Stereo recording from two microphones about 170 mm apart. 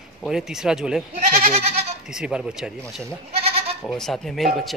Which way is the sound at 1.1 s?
40° right (ahead or behind).